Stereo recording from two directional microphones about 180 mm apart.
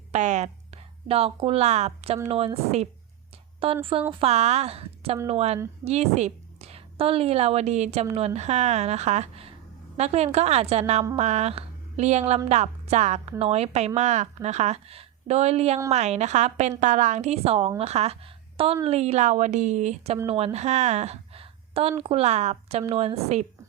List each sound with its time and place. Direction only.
0.1 s a woman's voice: 40° right (ahead or behind)
3.6 s a woman's voice: 30° right (ahead or behind)